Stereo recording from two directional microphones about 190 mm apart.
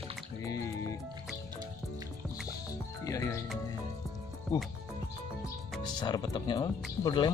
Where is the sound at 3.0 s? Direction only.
15° left (ahead or behind).